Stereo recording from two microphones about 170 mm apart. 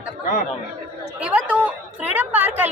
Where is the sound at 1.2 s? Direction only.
10° right (ahead or behind).